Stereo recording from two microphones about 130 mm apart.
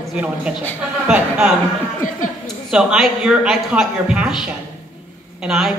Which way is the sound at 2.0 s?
90° left.